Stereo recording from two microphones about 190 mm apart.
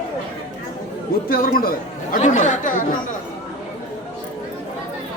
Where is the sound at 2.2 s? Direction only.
40° left (ahead or behind).